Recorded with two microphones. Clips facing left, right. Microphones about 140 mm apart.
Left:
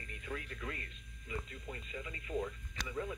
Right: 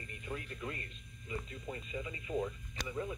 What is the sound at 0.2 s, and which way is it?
Speech, 30° right (ahead or behind).